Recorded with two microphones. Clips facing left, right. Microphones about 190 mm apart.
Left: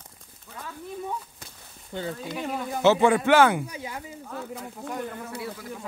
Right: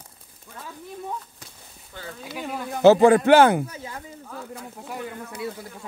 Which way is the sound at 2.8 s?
35° right (ahead or behind).